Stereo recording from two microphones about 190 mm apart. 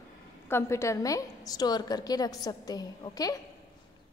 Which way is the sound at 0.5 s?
15° left (ahead or behind).